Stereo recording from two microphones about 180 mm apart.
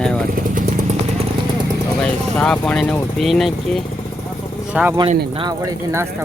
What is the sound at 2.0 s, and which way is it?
Speech, 5° left (ahead or behind).